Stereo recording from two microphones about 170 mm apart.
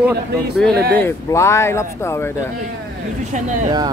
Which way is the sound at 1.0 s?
15° left (ahead or behind).